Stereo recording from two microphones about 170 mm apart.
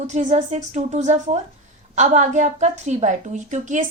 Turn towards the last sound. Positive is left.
turn(degrees=-45)  # may be behind; listen again after turning